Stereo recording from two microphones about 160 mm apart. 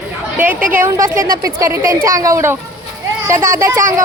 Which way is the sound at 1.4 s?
20° right (ahead or behind).